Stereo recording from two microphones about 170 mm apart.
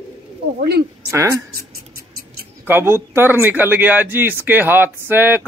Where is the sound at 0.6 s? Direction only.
70° right (ahead or behind).